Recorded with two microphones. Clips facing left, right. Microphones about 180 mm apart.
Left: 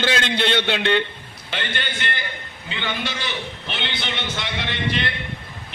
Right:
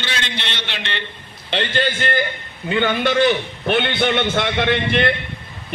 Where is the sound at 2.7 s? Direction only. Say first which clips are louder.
Right 10 dB; 50° right (ahead or behind).